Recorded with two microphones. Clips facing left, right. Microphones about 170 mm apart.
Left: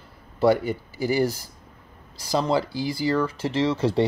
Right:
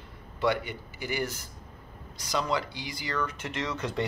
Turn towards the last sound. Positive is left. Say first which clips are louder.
# left 10 dB
turn(degrees=30)  # may be behind; listen again after turning